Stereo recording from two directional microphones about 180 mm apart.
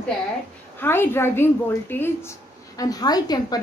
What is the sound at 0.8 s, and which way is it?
A woman's voice, 10° left (ahead or behind).